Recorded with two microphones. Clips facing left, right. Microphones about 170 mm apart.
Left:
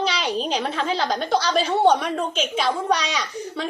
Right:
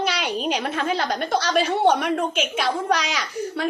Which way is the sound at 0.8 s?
55° right (ahead or behind).